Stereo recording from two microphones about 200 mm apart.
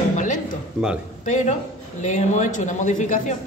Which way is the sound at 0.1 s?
40° left (ahead or behind).